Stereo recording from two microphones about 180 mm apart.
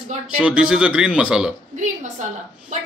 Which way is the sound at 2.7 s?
45° right (ahead or behind).